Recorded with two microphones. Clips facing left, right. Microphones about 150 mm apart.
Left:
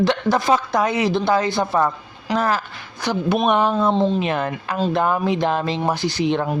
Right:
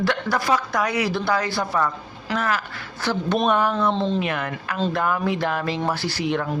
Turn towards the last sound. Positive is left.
turn(degrees=25)  # may be behind; listen again after turning